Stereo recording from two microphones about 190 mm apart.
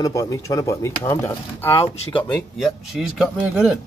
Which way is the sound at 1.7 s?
25° left (ahead or behind).